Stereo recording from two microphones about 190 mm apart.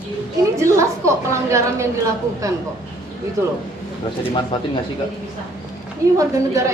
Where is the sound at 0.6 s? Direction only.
15° right (ahead or behind).